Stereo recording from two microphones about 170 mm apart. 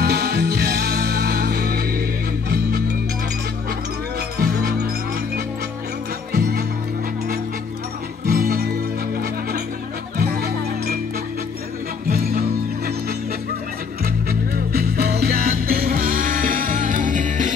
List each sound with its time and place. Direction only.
0.0 s music: 75° right (ahead or behind)
4.4 s music: 70° right (ahead or behind)
6.3 s music: 65° right (ahead or behind)
8.3 s music: 60° right (ahead or behind)
10.1 s music: 70° right (ahead or behind)
12.1 s music: 65° right (ahead or behind)
14.0 s music: 60° right (ahead or behind)